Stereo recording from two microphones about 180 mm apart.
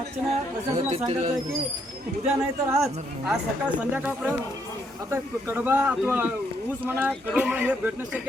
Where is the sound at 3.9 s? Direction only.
10° right (ahead or behind).